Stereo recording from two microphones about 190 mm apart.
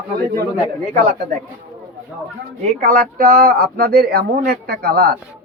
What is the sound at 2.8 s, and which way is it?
Speech, 50° right (ahead or behind).